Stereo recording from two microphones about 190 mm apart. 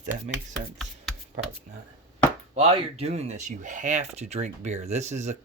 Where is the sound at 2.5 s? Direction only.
30° right (ahead or behind).